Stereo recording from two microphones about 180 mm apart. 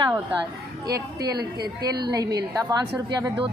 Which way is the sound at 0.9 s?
20° right (ahead or behind).